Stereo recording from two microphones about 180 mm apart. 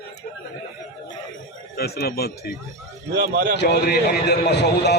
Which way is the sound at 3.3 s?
60° right (ahead or behind).